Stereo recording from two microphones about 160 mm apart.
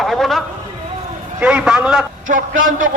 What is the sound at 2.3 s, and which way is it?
Speech, 55° right (ahead or behind).